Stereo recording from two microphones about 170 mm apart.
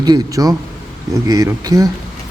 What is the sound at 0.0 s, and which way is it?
A man's voice, 20° right (ahead or behind).